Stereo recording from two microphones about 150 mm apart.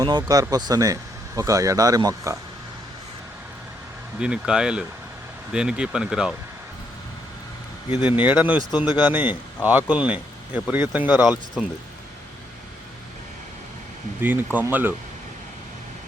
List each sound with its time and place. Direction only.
0.0 s speech: 25° right (ahead or behind)
4.2 s speech: 5° right (ahead or behind)
7.9 s speech: 30° left (ahead or behind)
8.1 s speech: 10° right (ahead or behind)
14.2 s speech: 15° right (ahead or behind)